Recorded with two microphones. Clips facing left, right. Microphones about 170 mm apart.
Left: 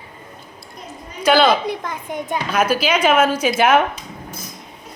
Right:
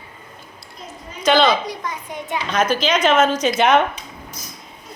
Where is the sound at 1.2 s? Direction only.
10° left (ahead or behind).